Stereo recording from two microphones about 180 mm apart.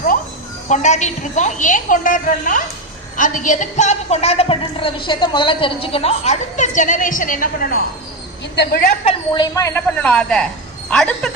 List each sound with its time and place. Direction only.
0.7 s a woman's voice: 40° left (ahead or behind)
8.5 s a woman's voice: 65° left (ahead or behind)
8.8 s a woman's voice: 40° left (ahead or behind)
9.3 s speech: 20° left (ahead or behind); by 11.3 s 5° left (ahead or behind)